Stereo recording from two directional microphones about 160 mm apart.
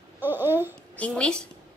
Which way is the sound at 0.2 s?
15° right (ahead or behind).